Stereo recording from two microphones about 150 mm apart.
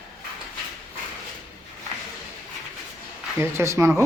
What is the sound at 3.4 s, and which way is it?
Speech, 15° right (ahead or behind).